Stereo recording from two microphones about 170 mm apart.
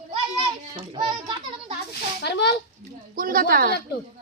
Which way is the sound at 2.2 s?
80° left.